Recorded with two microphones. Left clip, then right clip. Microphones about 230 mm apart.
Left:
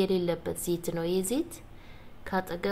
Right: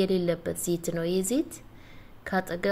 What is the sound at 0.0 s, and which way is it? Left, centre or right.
A woman's voice, centre.